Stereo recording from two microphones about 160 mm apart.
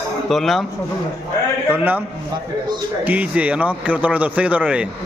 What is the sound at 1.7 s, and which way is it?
A man's voice, 10° right (ahead or behind).